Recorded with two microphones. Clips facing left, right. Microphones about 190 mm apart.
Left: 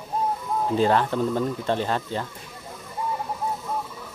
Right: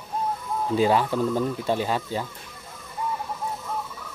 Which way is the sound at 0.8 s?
10° right (ahead or behind).